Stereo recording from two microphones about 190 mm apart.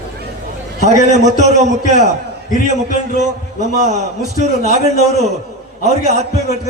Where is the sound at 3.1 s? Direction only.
40° right (ahead or behind).